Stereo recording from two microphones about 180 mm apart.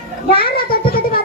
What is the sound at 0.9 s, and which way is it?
Music, 55° left (ahead or behind).